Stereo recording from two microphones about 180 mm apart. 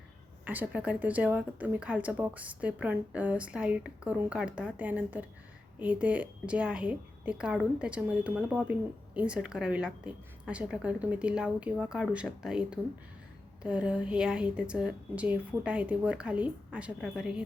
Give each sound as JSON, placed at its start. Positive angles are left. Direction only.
{"t": 0.4, "sound": "a woman's voice", "side_deg": -10}